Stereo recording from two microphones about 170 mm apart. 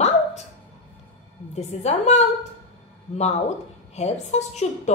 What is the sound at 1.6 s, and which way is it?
Speech, 40° left (ahead or behind).